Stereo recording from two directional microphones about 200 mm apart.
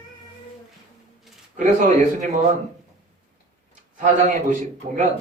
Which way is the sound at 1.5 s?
40° right (ahead or behind).